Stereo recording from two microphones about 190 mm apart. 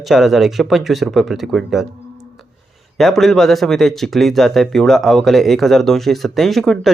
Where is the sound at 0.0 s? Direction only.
Centre (ahead or behind).